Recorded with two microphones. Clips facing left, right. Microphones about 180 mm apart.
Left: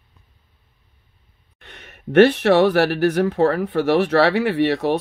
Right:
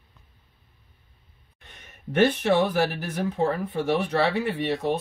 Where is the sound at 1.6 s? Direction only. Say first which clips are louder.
Left 7 dB; 75° left (ahead or behind).